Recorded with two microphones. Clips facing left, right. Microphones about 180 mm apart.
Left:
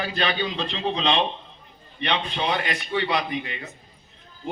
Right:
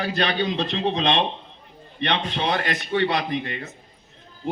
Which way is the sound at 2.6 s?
50° right (ahead or behind).